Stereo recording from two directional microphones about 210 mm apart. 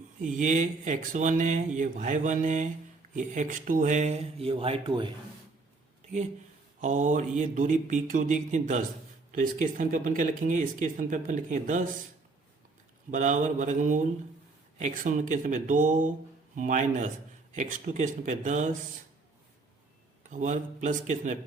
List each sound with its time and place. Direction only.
0.2 s speech: 35° right (ahead or behind)
6.8 s speech: 35° right (ahead or behind)
13.1 s speech: 35° right (ahead or behind)
20.3 s speech: 35° right (ahead or behind)